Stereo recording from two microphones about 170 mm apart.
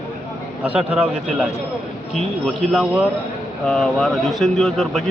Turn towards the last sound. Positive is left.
turn(degrees=0)  # may be behind; listen again after turning